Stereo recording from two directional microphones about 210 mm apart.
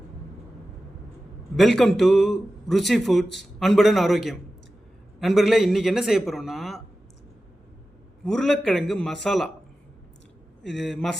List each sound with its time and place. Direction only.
1.5 s a man's voice: centre (ahead or behind)
8.2 s a man's voice: centre (ahead or behind)
10.6 s a man's voice: centre (ahead or behind)